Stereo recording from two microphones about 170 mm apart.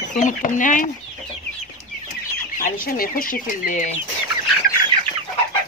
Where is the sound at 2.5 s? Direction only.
55° left (ahead or behind).